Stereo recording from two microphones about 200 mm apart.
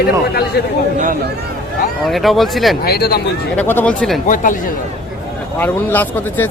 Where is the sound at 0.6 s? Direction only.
55° left (ahead or behind).